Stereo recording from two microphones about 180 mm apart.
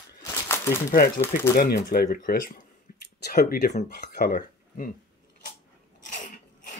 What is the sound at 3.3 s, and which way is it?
Speech, 60° left (ahead or behind).